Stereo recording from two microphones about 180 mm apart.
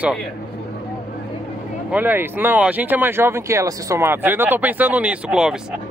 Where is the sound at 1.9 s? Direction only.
10° right (ahead or behind).